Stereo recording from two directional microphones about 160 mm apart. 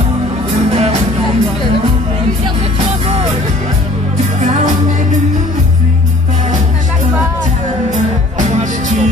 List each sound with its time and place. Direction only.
0.7 s music: 40° right (ahead or behind)
7.9 s music: 50° right (ahead or behind)